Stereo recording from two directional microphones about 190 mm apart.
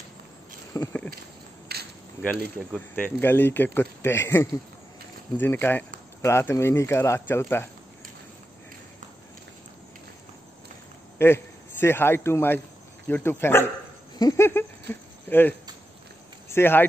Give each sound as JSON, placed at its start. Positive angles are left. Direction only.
{"t": 0.7, "sound": "speech", "side_deg": 10}
{"t": 1.7, "sound": "a sound", "side_deg": -55}
{"t": 2.7, "sound": "speech", "side_deg": 10}
{"t": 11.1, "sound": "a man's voice", "side_deg": 15}